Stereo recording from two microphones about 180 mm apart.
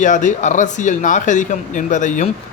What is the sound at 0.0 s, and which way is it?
Speech, 45° left (ahead or behind).